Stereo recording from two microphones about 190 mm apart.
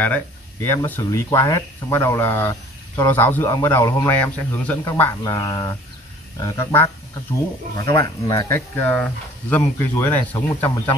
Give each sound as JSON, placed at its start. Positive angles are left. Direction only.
{"t": 0.0, "sound": "speech", "side_deg": 10}